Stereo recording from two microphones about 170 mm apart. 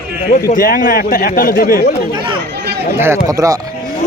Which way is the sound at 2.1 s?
30° right (ahead or behind).